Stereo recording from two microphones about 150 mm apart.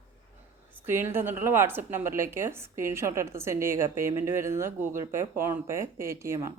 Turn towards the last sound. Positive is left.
turn(degrees=-20)  # may be behind; listen again after turning